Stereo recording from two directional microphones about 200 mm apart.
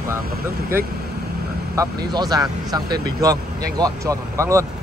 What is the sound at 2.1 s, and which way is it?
Speech, 20° right (ahead or behind).